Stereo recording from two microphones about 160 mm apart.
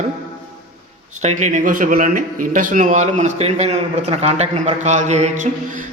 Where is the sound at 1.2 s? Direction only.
45° right (ahead or behind).